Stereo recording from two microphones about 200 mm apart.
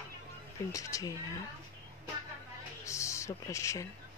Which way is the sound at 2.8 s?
15° left (ahead or behind).